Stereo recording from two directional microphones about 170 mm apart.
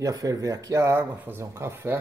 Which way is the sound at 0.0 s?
20° right (ahead or behind).